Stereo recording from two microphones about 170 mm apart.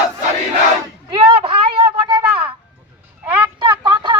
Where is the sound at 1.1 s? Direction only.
30° right (ahead or behind).